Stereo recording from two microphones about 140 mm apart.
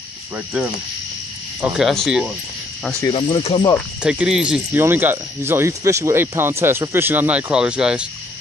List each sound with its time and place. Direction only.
1.6 s speech: centre (ahead or behind)
3.1 s speech: 40° left (ahead or behind)
4.0 s speech: 5° right (ahead or behind)